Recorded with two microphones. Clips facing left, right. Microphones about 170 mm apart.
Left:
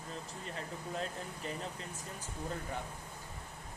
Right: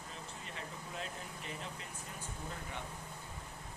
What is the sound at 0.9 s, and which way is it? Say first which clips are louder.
Speech: left 6 dB; 40° left (ahead or behind).